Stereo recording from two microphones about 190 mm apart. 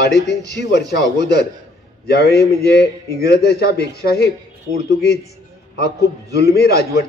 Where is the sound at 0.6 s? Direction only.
60° left (ahead or behind).